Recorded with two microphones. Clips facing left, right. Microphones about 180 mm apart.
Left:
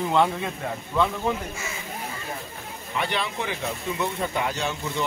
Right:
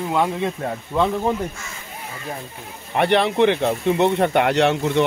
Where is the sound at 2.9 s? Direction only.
65° right (ahead or behind).